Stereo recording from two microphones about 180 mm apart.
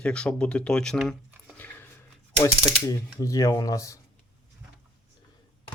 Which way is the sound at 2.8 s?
15° left (ahead or behind).